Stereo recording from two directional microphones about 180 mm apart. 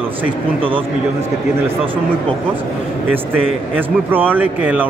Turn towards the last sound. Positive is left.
turn(degrees=-10)  # may be behind; listen again after turning